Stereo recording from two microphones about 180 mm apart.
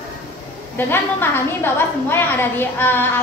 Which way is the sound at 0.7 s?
10° left (ahead or behind).